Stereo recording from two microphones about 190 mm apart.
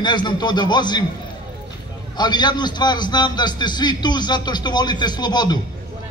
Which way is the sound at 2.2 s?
20° left (ahead or behind).